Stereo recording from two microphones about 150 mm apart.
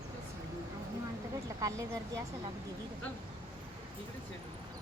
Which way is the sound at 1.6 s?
20° right (ahead or behind).